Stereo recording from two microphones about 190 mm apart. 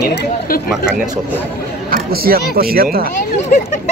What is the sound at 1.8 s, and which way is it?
Speech, 50° right (ahead or behind).